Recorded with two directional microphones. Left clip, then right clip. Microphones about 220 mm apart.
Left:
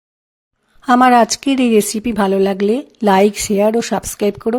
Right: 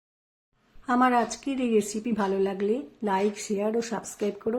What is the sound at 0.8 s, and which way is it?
A woman's voice, 45° left (ahead or behind).